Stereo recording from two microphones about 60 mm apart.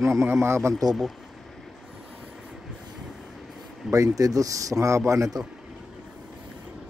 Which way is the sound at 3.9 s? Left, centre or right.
Right.